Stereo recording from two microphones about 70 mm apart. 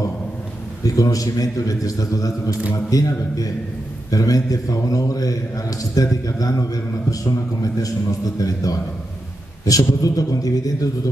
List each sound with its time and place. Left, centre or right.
0.8 s a man's voice: left